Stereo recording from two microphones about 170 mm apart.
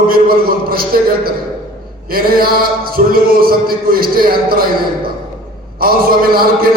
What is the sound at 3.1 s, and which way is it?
A man's voice, 60° right (ahead or behind).